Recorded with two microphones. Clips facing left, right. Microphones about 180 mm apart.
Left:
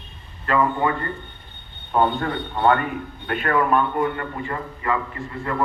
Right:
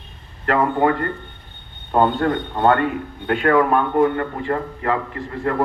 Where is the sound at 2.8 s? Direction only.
90° right.